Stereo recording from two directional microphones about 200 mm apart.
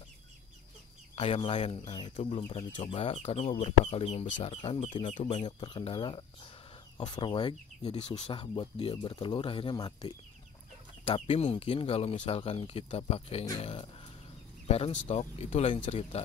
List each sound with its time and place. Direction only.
1.1 s speech: 30° left (ahead or behind)
11.1 s speech: 30° left (ahead or behind)